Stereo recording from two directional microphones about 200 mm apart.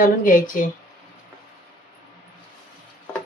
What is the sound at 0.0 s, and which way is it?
Speech, 40° left (ahead or behind).